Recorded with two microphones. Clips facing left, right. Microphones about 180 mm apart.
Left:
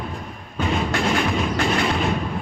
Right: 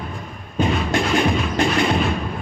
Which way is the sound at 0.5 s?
20° right (ahead or behind).